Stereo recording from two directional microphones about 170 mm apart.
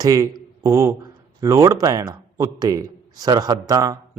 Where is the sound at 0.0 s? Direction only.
20° right (ahead or behind).